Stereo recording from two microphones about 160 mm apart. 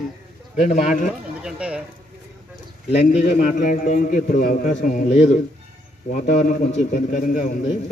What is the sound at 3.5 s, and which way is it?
A man's voice, 55° left (ahead or behind).